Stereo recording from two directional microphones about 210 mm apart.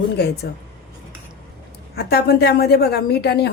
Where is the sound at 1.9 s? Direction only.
50° left (ahead or behind).